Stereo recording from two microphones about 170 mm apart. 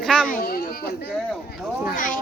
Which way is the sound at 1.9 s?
50° left (ahead or behind).